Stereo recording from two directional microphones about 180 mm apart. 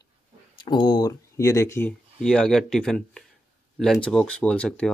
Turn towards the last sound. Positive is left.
turn(degrees=5)  # may be behind; listen again after turning